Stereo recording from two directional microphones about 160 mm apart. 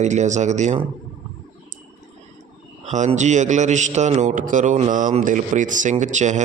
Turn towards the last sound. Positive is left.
turn(degrees=-50)  # may be behind; listen again after turning